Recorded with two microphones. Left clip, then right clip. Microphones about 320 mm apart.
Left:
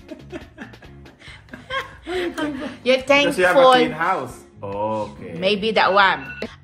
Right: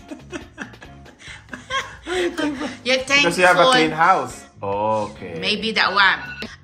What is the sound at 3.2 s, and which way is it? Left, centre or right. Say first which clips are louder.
Speech: right 2 dB; right.